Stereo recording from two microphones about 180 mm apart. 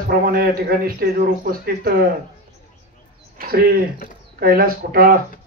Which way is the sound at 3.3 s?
55° right (ahead or behind).